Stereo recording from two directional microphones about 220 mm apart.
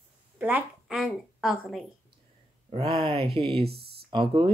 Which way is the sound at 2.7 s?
25° right (ahead or behind).